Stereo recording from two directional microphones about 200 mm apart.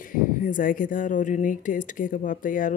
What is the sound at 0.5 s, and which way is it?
Speech, 40° left (ahead or behind).